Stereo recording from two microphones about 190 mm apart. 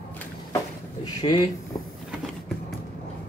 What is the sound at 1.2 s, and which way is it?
Speech, 20° left (ahead or behind).